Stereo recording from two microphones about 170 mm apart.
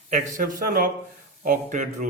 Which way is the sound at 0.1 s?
50° right (ahead or behind).